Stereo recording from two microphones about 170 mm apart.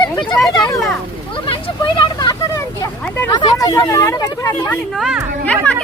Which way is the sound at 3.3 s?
25° left (ahead or behind).